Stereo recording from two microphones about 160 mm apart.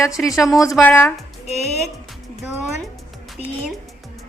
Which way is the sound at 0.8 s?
10° left (ahead or behind).